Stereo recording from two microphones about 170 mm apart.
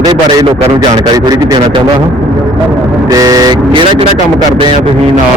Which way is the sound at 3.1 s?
20° right (ahead or behind).